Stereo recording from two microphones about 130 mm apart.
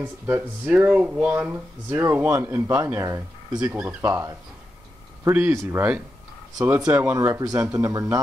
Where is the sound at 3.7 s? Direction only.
15° right (ahead or behind).